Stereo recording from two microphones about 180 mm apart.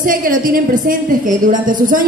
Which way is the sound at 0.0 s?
50° right (ahead or behind).